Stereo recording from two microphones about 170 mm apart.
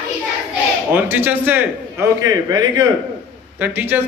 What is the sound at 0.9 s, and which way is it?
Speech, 10° right (ahead or behind).